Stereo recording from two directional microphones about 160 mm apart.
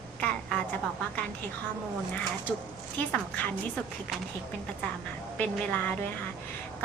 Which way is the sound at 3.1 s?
10° left (ahead or behind).